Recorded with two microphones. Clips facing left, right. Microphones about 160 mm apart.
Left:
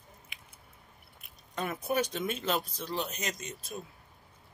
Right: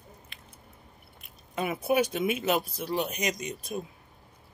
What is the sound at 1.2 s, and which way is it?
Speech, 10° right (ahead or behind).